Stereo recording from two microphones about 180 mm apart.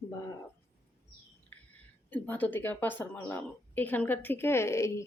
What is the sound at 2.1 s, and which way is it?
Speech, 10° left (ahead or behind).